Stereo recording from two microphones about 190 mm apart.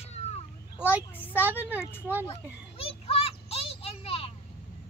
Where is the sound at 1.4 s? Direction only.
10° right (ahead or behind).